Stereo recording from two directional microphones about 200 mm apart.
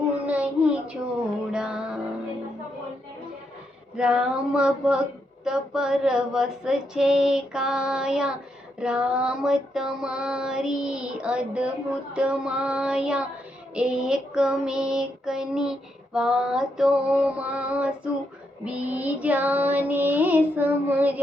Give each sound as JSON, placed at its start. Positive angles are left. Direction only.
{"t": 0.3, "sound": "child singing", "side_deg": -5}
{"t": 1.5, "sound": "female singing", "side_deg": -5}
{"t": 3.9, "sound": "female singing", "side_deg": -5}
{"t": 18.6, "sound": "child singing", "side_deg": -5}